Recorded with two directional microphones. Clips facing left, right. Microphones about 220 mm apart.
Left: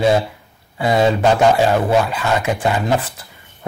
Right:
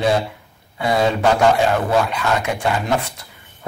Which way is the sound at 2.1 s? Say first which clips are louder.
Left 2 dB; 5° left (ahead or behind).